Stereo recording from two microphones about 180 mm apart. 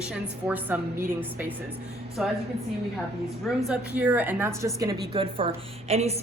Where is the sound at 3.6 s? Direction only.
5° right (ahead or behind).